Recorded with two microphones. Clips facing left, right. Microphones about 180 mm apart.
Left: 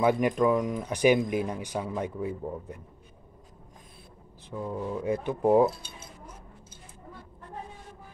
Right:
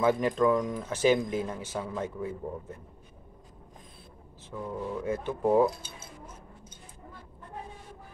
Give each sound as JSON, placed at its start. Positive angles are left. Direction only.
{"t": 0.0, "sound": "speech", "side_deg": 15}
{"t": 4.5, "sound": "speech", "side_deg": 15}